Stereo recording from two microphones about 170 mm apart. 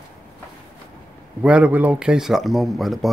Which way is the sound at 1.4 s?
5° right (ahead or behind).